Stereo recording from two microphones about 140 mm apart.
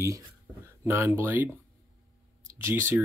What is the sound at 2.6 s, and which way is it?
Speech, 15° right (ahead or behind).